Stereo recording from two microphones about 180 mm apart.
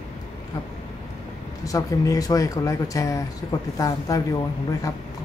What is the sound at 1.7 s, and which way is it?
Speech, 20° left (ahead or behind).